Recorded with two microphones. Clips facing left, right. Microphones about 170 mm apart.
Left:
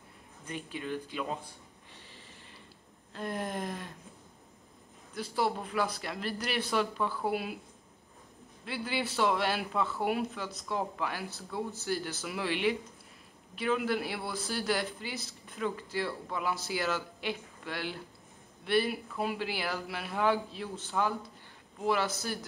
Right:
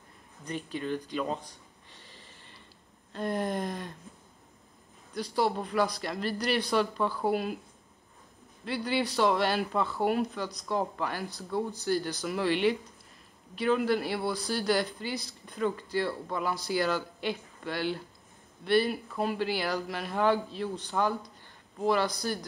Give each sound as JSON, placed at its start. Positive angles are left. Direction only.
{"t": 0.5, "sound": "speech", "side_deg": 5}
{"t": 3.1, "sound": "speech", "side_deg": 0}
{"t": 5.2, "sound": "speech", "side_deg": 5}
{"t": 7.2, "sound": "speech", "side_deg": -45}
{"t": 8.6, "sound": "speech", "side_deg": 0}
{"t": 14.2, "sound": "speech", "side_deg": -35}
{"t": 14.5, "sound": "speech", "side_deg": 0}